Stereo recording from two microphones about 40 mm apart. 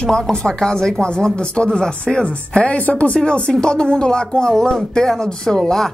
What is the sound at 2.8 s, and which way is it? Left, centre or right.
Speech, left.